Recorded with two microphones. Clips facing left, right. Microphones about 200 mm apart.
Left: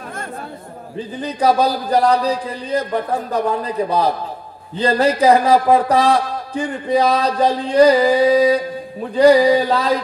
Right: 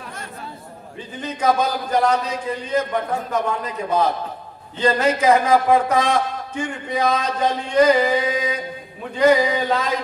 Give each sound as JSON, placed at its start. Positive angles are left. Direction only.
{"t": 1.2, "sound": "speech", "side_deg": 35}